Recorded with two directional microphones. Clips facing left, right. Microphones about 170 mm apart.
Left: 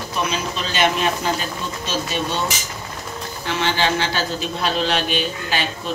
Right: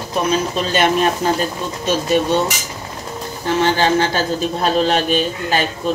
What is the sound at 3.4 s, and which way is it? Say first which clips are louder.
A man's voice: right 6 dB; 45° right (ahead or behind).